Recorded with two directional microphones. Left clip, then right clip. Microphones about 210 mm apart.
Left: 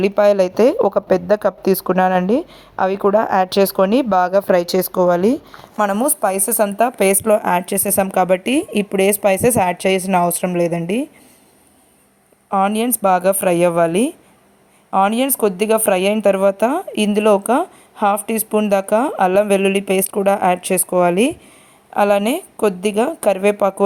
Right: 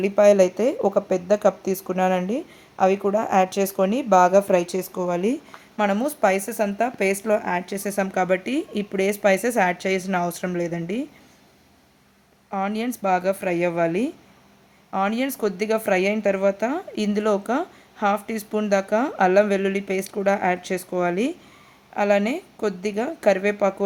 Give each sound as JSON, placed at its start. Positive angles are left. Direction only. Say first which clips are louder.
{"t": 0.0, "sound": "speech", "louder": "left 2 dB", "side_deg": 35}
{"t": 12.5, "sound": "speech", "louder": "left 9 dB", "side_deg": 30}